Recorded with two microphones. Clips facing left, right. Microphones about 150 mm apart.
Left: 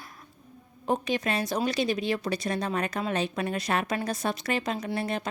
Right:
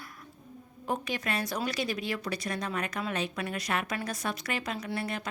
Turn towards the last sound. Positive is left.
turn(degrees=25)  # may be behind; listen again after turning